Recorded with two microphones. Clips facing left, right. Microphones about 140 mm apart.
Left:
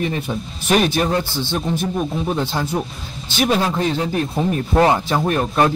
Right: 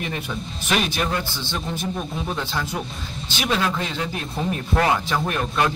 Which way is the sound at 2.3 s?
35° left (ahead or behind).